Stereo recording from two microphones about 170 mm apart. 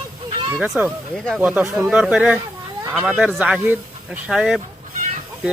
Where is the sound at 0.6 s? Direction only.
5° right (ahead or behind).